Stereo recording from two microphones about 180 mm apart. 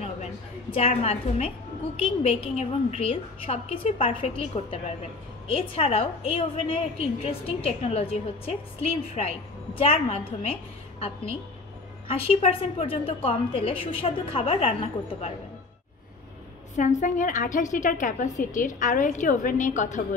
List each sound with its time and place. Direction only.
0.0 s a sound: 35° left (ahead or behind)
2.0 s a woman's voice: 30° left (ahead or behind)
12.1 s a woman's voice: 30° left (ahead or behind)
16.7 s a woman's voice: 45° left (ahead or behind)